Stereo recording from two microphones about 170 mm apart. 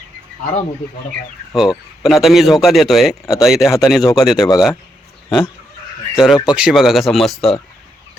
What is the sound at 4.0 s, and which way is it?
Speech, 20° left (ahead or behind).